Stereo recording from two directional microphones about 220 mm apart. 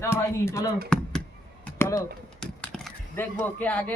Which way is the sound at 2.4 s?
5° left (ahead or behind).